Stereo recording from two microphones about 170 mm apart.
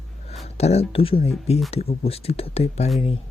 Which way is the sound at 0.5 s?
40° left (ahead or behind).